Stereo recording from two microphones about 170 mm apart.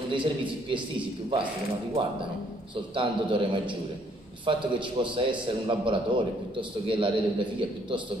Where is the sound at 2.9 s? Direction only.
30° right (ahead or behind).